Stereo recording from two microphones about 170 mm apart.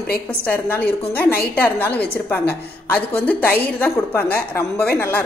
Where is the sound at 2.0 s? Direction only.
10° left (ahead or behind).